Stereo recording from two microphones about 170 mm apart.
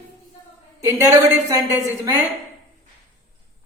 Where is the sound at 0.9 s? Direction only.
15° right (ahead or behind).